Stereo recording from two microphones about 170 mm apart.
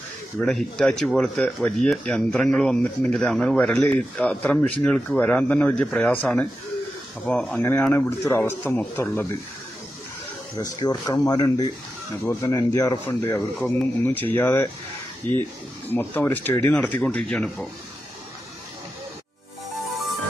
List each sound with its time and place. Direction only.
0.4 s speech: centre (ahead or behind)
10.6 s speech: 20° left (ahead or behind)
15.9 s speech: 10° left (ahead or behind)